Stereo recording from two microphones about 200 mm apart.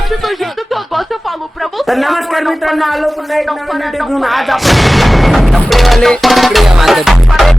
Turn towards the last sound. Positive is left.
turn(degrees=0)  # may be behind; listen again after turning